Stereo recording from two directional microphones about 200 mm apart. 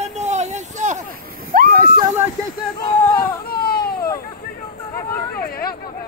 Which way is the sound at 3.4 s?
50° left (ahead or behind).